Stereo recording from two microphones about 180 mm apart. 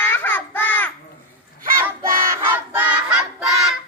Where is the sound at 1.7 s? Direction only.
15° right (ahead or behind).